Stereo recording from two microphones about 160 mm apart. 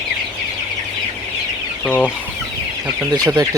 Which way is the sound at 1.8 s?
10° left (ahead or behind).